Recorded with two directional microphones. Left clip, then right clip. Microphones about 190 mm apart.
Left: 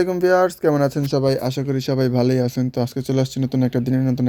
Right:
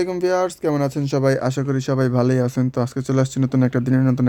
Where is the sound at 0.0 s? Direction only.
15° right (ahead or behind).